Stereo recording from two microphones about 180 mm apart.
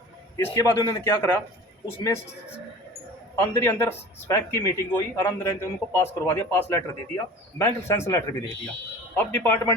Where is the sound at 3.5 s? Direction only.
10° left (ahead or behind).